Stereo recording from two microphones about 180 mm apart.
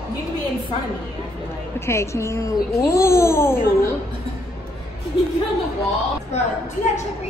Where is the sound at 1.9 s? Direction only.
15° left (ahead or behind).